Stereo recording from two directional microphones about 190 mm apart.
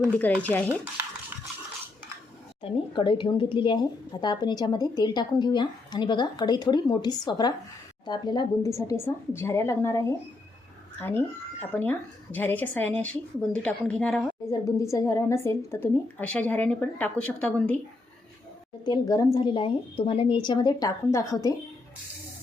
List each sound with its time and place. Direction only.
0.1 s a woman's voice: 10° left (ahead or behind)
2.6 s a woman's voice: 25° left (ahead or behind); by 17.7 s 10° left (ahead or behind)
18.9 s a woman's voice: 20° left (ahead or behind)